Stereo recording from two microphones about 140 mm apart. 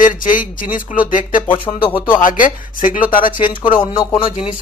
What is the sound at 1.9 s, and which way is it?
Speech, 15° left (ahead or behind).